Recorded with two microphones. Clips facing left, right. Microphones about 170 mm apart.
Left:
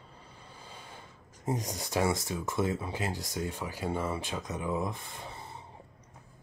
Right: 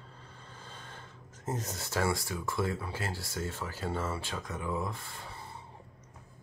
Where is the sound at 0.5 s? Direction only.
10° left (ahead or behind).